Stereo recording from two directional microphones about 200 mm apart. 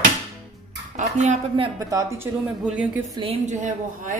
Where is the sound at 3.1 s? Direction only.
30° right (ahead or behind).